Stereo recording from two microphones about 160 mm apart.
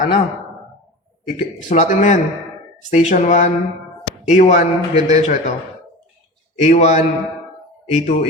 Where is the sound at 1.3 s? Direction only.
45° left (ahead or behind).